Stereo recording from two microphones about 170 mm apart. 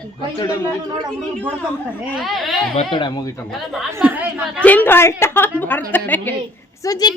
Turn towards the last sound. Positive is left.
turn(degrees=20)  # may be behind; listen again after turning